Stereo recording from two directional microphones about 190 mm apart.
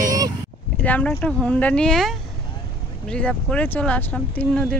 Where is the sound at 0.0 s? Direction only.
20° right (ahead or behind).